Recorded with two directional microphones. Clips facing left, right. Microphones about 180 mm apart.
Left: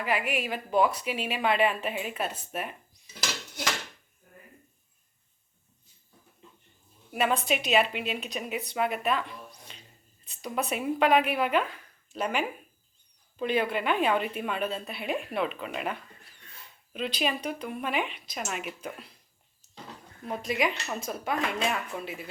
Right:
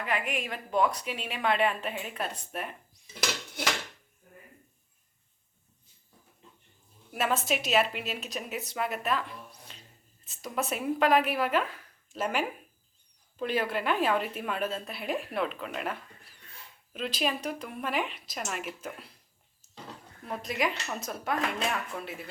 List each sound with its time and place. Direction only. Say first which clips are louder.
0.0 s a woman's voice: left 3 dB; 5° left (ahead or behind)
7.1 s a woman's voice: left 2 dB; centre (ahead or behind)
10.2 s a woman's voice: left 1 dB; centre (ahead or behind)
20.2 s a woman's voice: left 2 dB; centre (ahead or behind)